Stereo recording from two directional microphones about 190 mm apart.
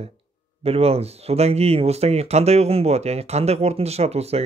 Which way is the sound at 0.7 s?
30° right (ahead or behind).